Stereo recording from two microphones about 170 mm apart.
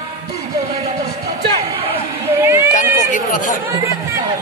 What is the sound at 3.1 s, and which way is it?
Chatter, 50° left (ahead or behind).